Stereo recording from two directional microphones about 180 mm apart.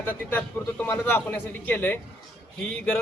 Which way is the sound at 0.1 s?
10° left (ahead or behind).